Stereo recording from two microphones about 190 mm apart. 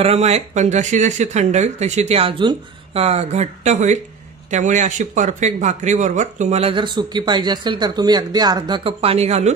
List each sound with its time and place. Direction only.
0.0 s speech: 35° right (ahead or behind)